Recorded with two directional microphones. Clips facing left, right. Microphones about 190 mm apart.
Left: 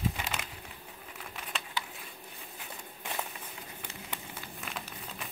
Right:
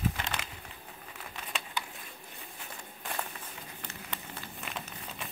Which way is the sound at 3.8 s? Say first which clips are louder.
Even; 10° left (ahead or behind).